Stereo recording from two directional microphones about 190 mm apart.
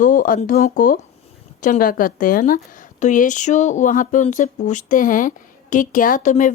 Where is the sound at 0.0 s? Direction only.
45° left (ahead or behind).